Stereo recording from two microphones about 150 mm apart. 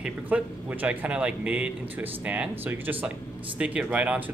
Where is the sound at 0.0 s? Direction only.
10° right (ahead or behind).